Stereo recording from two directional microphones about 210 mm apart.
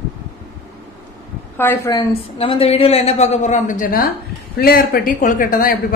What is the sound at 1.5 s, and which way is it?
Speech, 10° left (ahead or behind).